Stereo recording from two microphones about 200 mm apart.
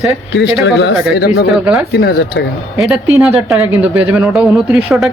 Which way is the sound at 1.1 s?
50° left (ahead or behind).